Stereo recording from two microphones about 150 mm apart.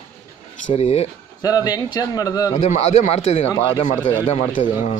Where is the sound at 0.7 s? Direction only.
45° left (ahead or behind).